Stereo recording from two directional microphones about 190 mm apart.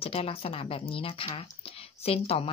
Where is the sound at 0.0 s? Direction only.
30° left (ahead or behind).